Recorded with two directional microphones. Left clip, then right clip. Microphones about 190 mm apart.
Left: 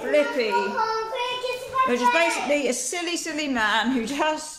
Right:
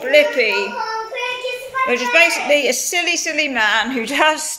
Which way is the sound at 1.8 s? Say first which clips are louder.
Right 7 dB; 10° left (ahead or behind).